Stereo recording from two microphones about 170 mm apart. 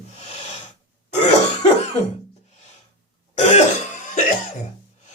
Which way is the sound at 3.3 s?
40° left (ahead or behind).